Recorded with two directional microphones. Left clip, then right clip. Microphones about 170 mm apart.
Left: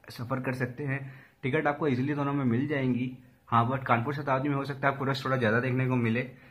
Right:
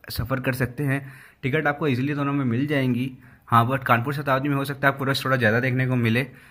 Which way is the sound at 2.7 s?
35° right (ahead or behind).